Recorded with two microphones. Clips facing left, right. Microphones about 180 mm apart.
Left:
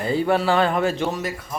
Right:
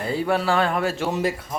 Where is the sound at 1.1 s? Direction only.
30° right (ahead or behind).